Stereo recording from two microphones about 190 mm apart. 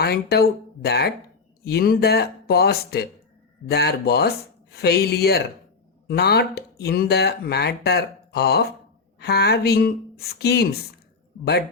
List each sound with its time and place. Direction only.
0.0 s speech: 55° left (ahead or behind)